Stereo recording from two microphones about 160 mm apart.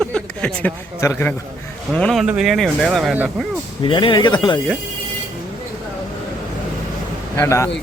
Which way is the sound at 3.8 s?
30° left (ahead or behind).